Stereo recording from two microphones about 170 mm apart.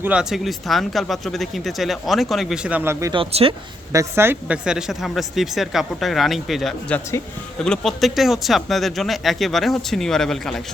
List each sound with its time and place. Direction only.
0.0 s speech: 5° right (ahead or behind)
3.1 s speech: 35° right (ahead or behind)
3.9 s speech: 15° right (ahead or behind); by 10.6 s centre (ahead or behind)